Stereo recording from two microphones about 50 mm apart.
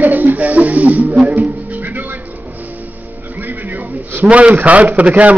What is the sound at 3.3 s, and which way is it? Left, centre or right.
Speech, right.